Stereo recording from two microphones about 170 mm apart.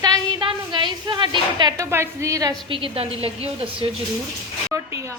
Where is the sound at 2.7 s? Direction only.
35° right (ahead or behind).